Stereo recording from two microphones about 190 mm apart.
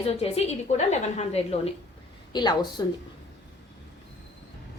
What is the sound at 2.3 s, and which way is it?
Speech, 20° left (ahead or behind).